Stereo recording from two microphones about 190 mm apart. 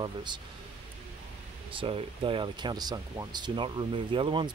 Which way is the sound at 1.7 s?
30° right (ahead or behind).